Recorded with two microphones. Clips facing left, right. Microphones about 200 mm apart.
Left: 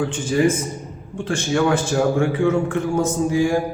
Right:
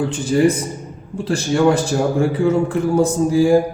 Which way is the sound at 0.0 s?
35° right (ahead or behind).